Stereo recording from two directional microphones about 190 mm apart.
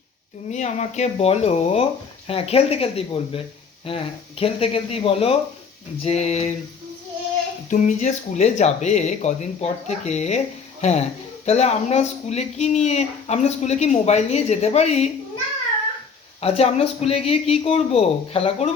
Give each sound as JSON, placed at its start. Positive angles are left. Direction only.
{"t": 0.5, "sound": "speech", "side_deg": 35}
{"t": 7.7, "sound": "speech", "side_deg": 40}
{"t": 16.4, "sound": "speech", "side_deg": 30}